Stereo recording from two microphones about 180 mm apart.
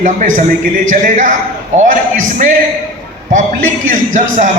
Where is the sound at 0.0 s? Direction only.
45° right (ahead or behind).